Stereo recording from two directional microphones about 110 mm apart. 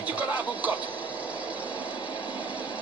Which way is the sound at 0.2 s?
15° right (ahead or behind).